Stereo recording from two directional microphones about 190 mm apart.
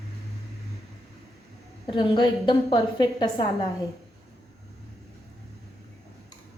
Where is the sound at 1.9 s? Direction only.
25° left (ahead or behind).